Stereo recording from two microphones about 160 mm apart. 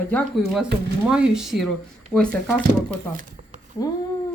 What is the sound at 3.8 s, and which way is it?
Speech, 20° left (ahead or behind).